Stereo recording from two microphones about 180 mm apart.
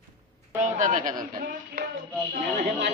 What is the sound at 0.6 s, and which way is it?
Speech, 45° right (ahead or behind).